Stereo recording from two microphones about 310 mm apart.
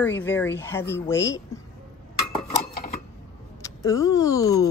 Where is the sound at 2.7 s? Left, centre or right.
Left.